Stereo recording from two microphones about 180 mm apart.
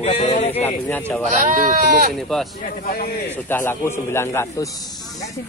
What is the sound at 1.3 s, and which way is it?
Speech, 50° right (ahead or behind).